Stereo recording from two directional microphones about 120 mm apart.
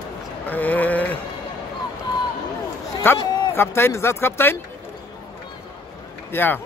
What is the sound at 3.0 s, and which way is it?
Speech, 20° left (ahead or behind).